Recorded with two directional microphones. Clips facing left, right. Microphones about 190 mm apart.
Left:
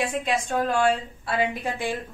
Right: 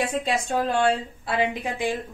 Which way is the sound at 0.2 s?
30° right (ahead or behind).